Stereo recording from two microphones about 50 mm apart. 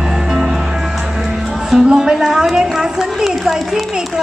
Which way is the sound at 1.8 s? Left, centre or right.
Centre.